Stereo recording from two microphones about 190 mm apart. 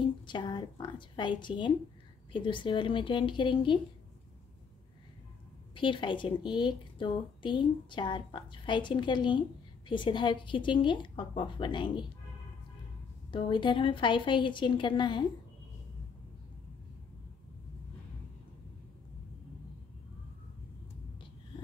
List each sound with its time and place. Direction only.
0.3 s speech: 25° left (ahead or behind)
5.8 s speech: 25° left (ahead or behind)
13.3 s speech: 25° left (ahead or behind)